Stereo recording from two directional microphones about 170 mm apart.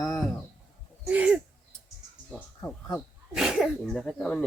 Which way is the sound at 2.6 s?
10° left (ahead or behind).